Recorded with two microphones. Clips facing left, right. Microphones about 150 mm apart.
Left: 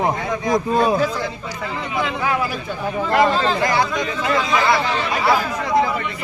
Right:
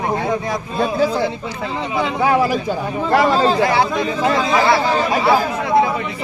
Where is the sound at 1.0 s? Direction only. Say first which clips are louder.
Right 5 dB; 30° right (ahead or behind).